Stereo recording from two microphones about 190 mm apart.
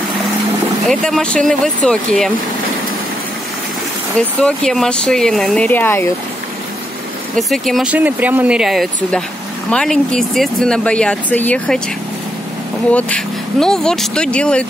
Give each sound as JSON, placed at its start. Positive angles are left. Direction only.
{"t": 0.8, "sound": "speech", "side_deg": 5}
{"t": 4.4, "sound": "speech", "side_deg": 5}
{"t": 7.3, "sound": "speech", "side_deg": 0}
{"t": 12.9, "sound": "speech", "side_deg": 5}